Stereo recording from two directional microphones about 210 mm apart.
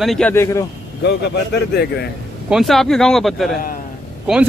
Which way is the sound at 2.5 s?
Centre (ahead or behind).